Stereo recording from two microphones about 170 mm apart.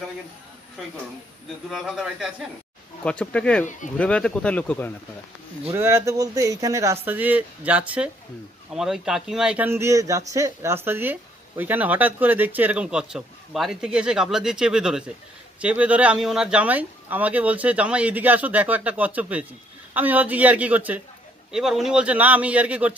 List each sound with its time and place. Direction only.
1.7 s speech: centre (ahead or behind)
5.7 s speech: 15° right (ahead or behind)